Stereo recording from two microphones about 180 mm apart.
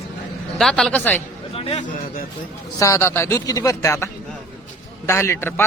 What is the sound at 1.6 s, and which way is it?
Speech, 30° left (ahead or behind).